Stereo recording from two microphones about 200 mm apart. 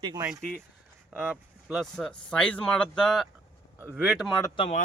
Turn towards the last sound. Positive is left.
turn(degrees=30)  # may be behind; listen again after turning